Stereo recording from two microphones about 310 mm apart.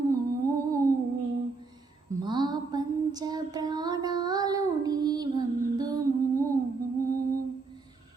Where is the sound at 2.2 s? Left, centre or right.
Centre.